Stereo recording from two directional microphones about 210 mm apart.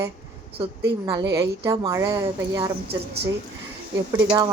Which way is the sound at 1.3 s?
15° right (ahead or behind).